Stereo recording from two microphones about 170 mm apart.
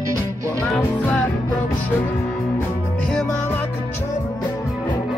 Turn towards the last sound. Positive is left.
turn(degrees=5)  # may be behind; listen again after turning